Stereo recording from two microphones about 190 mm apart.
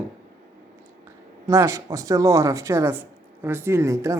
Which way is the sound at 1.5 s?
15° right (ahead or behind).